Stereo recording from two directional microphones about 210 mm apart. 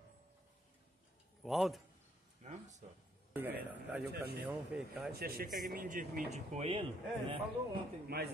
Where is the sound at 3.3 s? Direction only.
10° right (ahead or behind).